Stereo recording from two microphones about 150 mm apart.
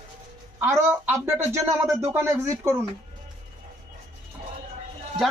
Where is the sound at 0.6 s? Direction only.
15° right (ahead or behind).